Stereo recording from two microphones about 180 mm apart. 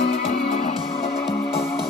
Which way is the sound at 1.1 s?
65° left (ahead or behind).